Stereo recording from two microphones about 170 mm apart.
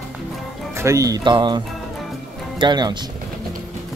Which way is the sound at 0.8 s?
20° right (ahead or behind).